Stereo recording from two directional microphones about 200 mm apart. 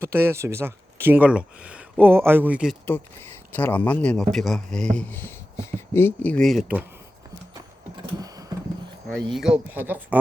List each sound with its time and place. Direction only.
0.0 s speech: 10° right (ahead or behind)
2.8 s speech: 10° left (ahead or behind)
8.2 s a sound: 20° right (ahead or behind)
9.3 s speech: 5° right (ahead or behind)